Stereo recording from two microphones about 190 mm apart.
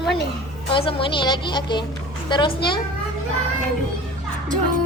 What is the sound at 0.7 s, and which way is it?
Speech, 30° left (ahead or behind).